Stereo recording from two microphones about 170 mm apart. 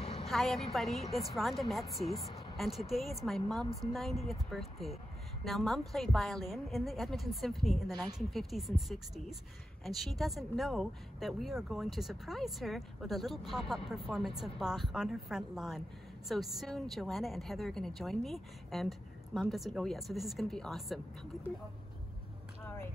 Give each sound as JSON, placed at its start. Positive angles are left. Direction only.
{"t": 0.0, "sound": "vehicle", "side_deg": 35}
{"t": 0.3, "sound": "a woman's voice", "side_deg": 0}
{"t": 0.8, "sound": "a woman's voice", "side_deg": 40}
{"t": 1.1, "sound": "speech", "side_deg": 0}